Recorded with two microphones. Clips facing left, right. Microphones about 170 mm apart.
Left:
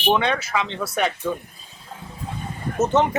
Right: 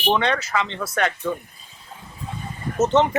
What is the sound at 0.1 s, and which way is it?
A man's voice, 10° left (ahead or behind).